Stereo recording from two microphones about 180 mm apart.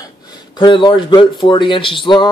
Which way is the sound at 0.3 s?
25° left (ahead or behind).